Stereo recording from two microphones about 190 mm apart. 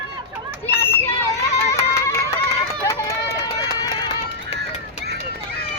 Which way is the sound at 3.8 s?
25° left (ahead or behind).